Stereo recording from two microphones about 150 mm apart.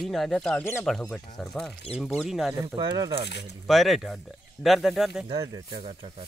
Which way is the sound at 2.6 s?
25° right (ahead or behind).